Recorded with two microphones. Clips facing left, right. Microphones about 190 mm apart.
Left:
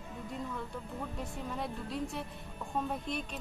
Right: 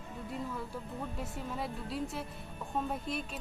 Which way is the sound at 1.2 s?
5° right (ahead or behind).